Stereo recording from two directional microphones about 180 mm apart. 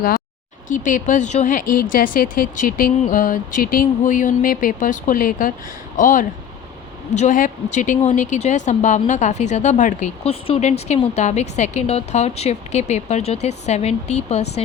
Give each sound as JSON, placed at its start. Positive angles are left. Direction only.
{"t": 0.9, "sound": "speech", "side_deg": 45}
{"t": 1.7, "sound": "a woman's voice", "side_deg": 55}